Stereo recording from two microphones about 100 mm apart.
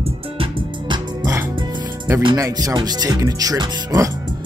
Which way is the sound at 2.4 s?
35° right (ahead or behind).